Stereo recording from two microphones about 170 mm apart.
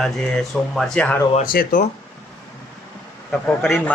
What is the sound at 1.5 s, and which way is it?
Speech, 55° left (ahead or behind).